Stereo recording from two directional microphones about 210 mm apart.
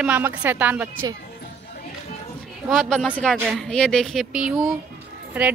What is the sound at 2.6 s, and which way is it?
A woman's voice, centre (ahead or behind).